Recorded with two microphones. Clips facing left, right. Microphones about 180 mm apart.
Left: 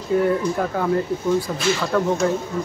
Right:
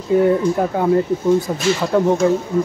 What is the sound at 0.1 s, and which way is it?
Speech, 20° right (ahead or behind).